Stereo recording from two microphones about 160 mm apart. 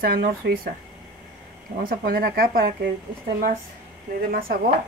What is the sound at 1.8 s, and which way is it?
Speech, 65° right (ahead or behind).